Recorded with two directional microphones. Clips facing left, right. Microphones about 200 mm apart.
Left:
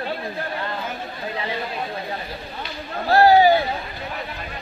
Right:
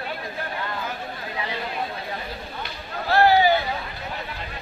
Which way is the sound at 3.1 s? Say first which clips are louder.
Left 4 dB; 40° left (ahead or behind).